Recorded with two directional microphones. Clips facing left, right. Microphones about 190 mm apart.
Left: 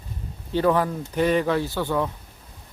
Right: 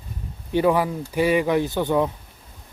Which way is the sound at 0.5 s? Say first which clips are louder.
Right 1 dB; 10° right (ahead or behind).